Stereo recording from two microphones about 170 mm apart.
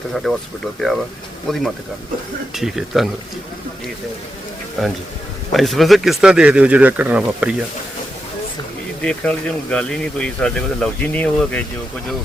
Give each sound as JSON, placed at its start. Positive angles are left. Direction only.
{"t": 0.1, "sound": "speech", "side_deg": 0}
{"t": 2.6, "sound": "speech", "side_deg": 0}
{"t": 5.5, "sound": "speech", "side_deg": 0}
{"t": 9.0, "sound": "speech", "side_deg": 5}